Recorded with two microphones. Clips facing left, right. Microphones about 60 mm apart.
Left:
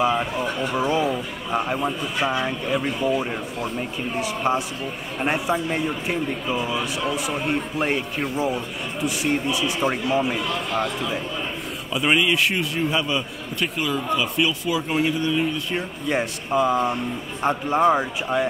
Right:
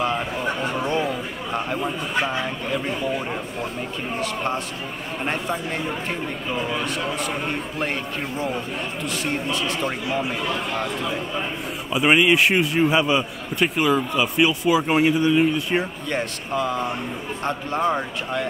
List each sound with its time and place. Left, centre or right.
0.0 s a man's voice: centre
11.9 s a man's voice: right
16.1 s a man's voice: centre